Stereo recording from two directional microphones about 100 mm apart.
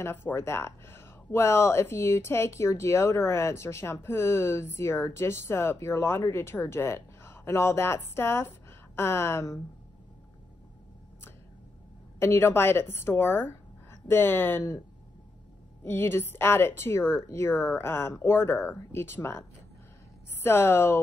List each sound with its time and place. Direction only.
0.0 s a woman's voice: 20° left (ahead or behind)
12.2 s speech: 25° left (ahead or behind)
15.8 s speech: 25° left (ahead or behind)
20.4 s speech: 25° left (ahead or behind)